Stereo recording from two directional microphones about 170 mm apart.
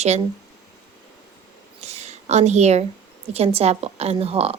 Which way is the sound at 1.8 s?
40° right (ahead or behind).